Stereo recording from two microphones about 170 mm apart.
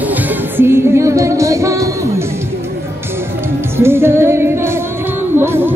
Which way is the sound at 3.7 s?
15° right (ahead or behind).